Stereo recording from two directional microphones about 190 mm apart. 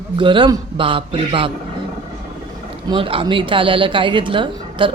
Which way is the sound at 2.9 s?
30° right (ahead or behind).